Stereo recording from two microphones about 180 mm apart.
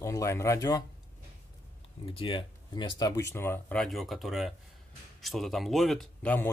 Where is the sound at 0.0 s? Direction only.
15° left (ahead or behind).